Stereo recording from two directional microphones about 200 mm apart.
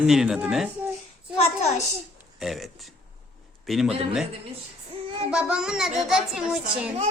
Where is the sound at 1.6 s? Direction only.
35° left (ahead or behind).